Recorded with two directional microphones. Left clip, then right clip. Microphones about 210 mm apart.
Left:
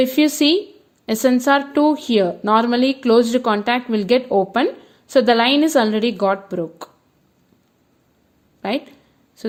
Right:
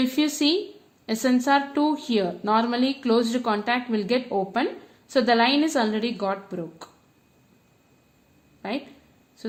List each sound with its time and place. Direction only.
0.0 s speech: 35° left (ahead or behind)
8.6 s speech: 40° left (ahead or behind)